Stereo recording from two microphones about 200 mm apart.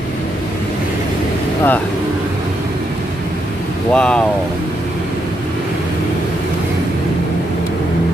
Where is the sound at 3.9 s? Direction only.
5° left (ahead or behind).